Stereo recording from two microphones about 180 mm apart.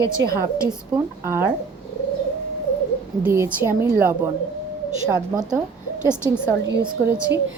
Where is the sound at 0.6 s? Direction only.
10° right (ahead or behind).